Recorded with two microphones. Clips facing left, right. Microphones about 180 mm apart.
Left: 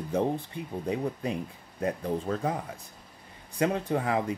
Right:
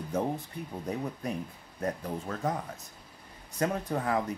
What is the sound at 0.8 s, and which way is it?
Speech, 10° left (ahead or behind).